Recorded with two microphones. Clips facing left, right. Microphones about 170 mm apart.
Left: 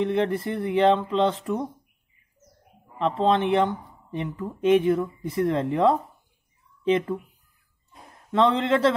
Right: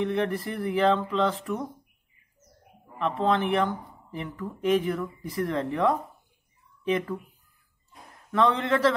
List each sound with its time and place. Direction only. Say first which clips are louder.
0.0 s speech: left 3 dB; 25° left (ahead or behind)
3.0 s speech: left 3 dB; 25° left (ahead or behind)
8.3 s speech: left 3 dB; 25° left (ahead or behind)